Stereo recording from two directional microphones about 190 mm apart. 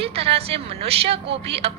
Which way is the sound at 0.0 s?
30° right (ahead or behind).